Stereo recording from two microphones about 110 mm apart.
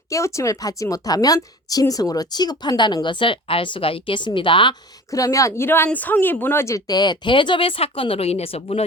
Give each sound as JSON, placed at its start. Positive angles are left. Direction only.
{"t": 0.1, "sound": "a woman's voice", "side_deg": 25}
{"t": 5.1, "sound": "a woman's voice", "side_deg": 30}